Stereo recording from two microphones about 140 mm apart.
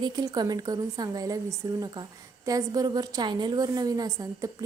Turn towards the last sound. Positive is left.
turn(degrees=-25)  # may be behind; listen again after turning